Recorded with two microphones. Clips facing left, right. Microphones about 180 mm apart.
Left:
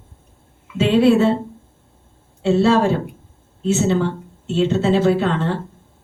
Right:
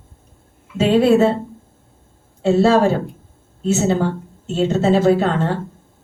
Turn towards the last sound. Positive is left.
turn(degrees=-45)  # may be behind; listen again after turning